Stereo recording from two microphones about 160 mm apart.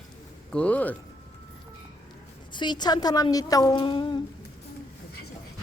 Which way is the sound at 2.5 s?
30° left (ahead or behind).